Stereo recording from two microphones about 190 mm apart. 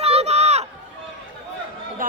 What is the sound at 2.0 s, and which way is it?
Basketball bounce, 45° right (ahead or behind).